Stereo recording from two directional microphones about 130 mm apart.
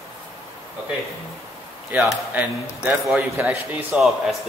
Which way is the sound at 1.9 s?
Centre (ahead or behind).